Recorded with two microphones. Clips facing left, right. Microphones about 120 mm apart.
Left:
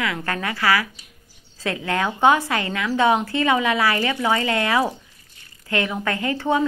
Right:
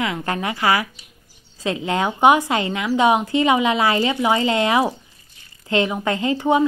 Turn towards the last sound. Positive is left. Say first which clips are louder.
# right 3 dB
turn(degrees=-15)  # may be behind; listen again after turning